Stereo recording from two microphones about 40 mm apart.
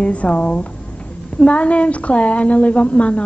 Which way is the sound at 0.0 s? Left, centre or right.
Left.